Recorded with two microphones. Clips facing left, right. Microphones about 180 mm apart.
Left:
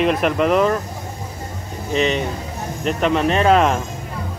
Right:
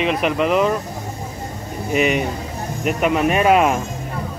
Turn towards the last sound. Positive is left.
turn(degrees=-10)  # may be behind; listen again after turning